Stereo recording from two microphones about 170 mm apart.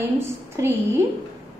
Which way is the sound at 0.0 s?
15° right (ahead or behind).